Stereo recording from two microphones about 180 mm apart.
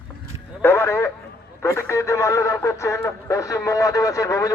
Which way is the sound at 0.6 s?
15° left (ahead or behind).